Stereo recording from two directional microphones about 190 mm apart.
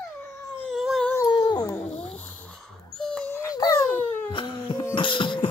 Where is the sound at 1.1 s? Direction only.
20° left (ahead or behind).